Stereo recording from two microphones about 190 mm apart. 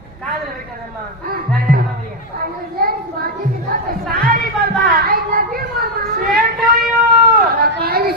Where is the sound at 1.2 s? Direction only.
50° right (ahead or behind).